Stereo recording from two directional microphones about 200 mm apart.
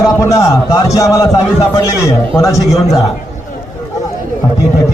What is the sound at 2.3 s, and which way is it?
Speech, 15° left (ahead or behind).